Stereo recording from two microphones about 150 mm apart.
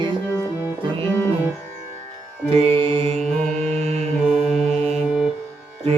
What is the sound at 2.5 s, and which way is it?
Music, 40° right (ahead or behind).